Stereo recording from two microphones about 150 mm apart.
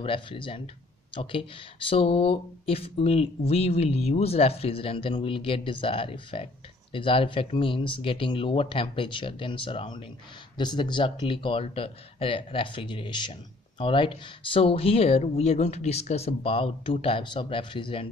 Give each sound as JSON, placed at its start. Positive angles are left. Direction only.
{"t": 0.0, "sound": "speech", "side_deg": 35}